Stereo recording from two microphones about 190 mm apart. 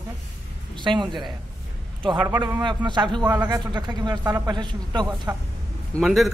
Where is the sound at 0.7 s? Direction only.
25° right (ahead or behind).